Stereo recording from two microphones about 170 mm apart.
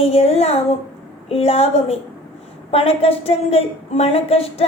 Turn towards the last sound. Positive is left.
turn(degrees=35)  # may be behind; listen again after turning